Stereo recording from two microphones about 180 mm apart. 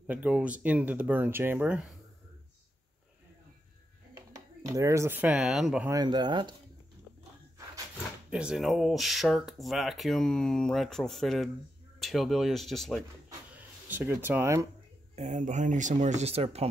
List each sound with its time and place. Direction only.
0.0 s speech: 5° right (ahead or behind)
4.1 s speech: 20° right (ahead or behind); by 5.9 s centre (ahead or behind)
5.9 s speech: 20° right (ahead or behind)
8.3 s speech: 5° right (ahead or behind)
13.6 s speech: 10° right (ahead or behind)
15.1 s speech: 40° right (ahead or behind)